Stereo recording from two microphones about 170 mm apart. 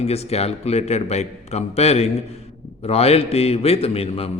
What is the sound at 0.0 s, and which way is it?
Speech, 35° left (ahead or behind).